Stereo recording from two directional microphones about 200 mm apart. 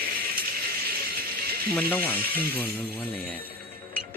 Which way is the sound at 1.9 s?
10° left (ahead or behind).